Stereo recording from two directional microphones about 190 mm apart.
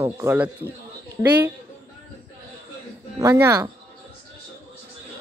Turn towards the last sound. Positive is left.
turn(degrees=-15)  # may be behind; listen again after turning